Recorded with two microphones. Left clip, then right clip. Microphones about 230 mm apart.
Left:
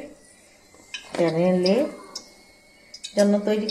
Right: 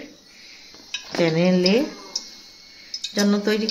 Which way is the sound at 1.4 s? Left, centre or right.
Right.